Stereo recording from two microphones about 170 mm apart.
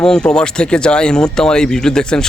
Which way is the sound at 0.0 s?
5° left (ahead or behind).